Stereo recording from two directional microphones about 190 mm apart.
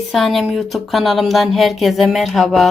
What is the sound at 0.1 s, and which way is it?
Speech, centre (ahead or behind).